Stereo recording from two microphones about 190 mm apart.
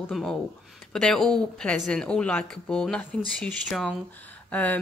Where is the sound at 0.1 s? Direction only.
Centre (ahead or behind).